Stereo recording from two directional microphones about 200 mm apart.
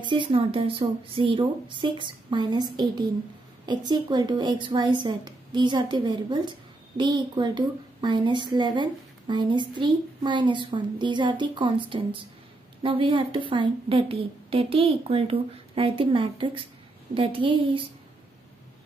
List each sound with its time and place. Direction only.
0.0 s a woman's voice: 25° right (ahead or behind)